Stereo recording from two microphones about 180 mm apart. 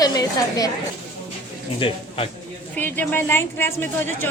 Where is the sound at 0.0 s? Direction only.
20° left (ahead or behind).